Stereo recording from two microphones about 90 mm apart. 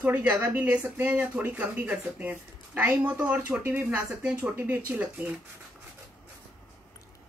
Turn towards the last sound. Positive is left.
turn(degrees=-20)  # may be behind; listen again after turning